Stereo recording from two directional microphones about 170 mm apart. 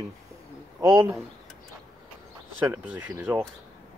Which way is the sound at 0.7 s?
20° right (ahead or behind).